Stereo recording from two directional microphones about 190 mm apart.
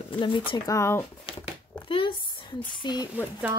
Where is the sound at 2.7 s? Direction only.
20° left (ahead or behind).